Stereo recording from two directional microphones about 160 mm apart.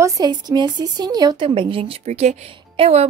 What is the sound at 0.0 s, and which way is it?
A woman's voice, 25° right (ahead or behind).